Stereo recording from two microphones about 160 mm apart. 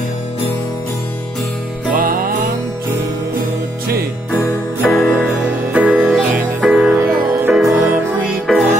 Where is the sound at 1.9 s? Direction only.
60° right (ahead or behind).